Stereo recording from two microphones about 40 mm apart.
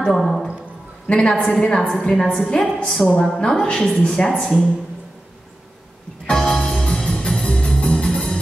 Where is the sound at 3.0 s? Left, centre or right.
Centre.